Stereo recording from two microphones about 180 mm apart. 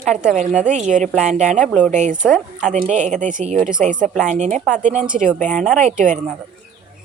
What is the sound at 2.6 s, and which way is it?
Speech, 40° right (ahead or behind).